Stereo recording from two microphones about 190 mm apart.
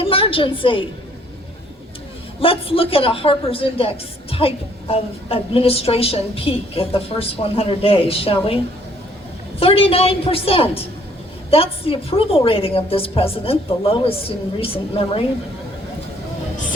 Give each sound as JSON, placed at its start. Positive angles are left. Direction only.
{"t": 0.0, "sound": "a woman's voice", "side_deg": 30}
{"t": 2.4, "sound": "a man's voice", "side_deg": 30}